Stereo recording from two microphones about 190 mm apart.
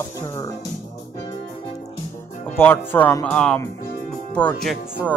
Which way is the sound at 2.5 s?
10° left (ahead or behind).